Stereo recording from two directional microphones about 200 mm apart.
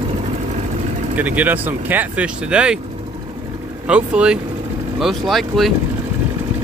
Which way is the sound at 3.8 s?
5° right (ahead or behind).